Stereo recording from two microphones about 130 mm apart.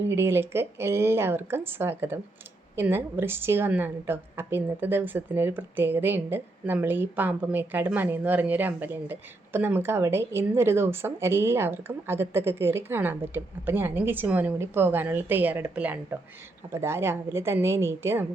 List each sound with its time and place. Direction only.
0.1 s a woman's voice: 20° right (ahead or behind)